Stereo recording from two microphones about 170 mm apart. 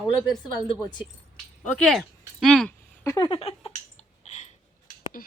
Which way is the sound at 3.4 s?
35° left (ahead or behind).